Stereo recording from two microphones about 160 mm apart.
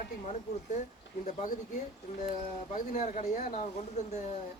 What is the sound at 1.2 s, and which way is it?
Speech, 55° left (ahead or behind).